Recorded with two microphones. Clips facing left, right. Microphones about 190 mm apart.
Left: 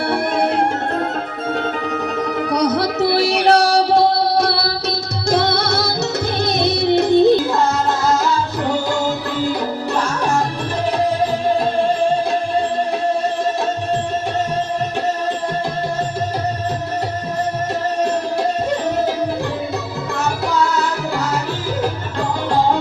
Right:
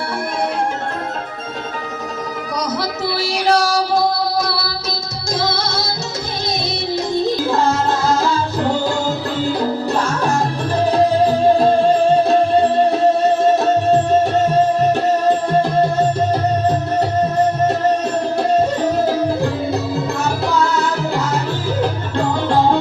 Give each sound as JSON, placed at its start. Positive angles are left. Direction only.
{"t": 2.6, "sound": "music", "side_deg": 65}